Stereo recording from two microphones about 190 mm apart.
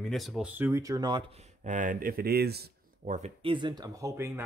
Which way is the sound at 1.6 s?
40° right (ahead or behind).